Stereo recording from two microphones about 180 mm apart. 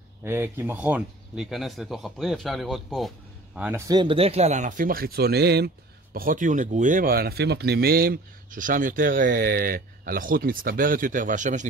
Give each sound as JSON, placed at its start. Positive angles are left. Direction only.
{"t": 0.2, "sound": "speech", "side_deg": -15}
{"t": 3.5, "sound": "speech", "side_deg": -10}
{"t": 6.1, "sound": "speech", "side_deg": -50}